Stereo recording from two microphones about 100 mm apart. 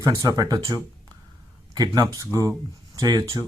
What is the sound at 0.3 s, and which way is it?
Speech, 40° right (ahead or behind).